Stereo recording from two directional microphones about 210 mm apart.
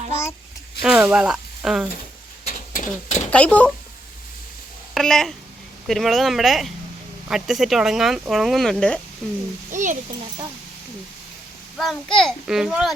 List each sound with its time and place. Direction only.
0.8 s speech: 5° right (ahead or behind)
2.5 s horse: 35° left (ahead or behind)
3.3 s speech: 5° left (ahead or behind)
4.9 s speech: centre (ahead or behind)
9.7 s speech: 35° right (ahead or behind)
11.8 s speech: centre (ahead or behind)